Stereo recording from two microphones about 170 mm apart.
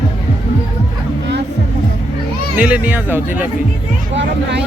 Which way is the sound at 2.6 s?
10° right (ahead or behind).